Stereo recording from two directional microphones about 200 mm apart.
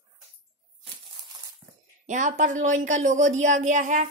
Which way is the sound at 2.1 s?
40° right (ahead or behind).